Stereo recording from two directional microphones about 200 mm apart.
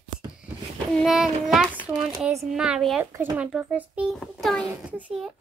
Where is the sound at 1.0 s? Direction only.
Centre (ahead or behind).